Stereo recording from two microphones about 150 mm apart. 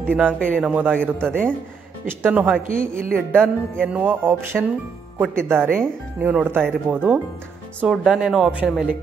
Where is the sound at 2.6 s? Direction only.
65° right (ahead or behind).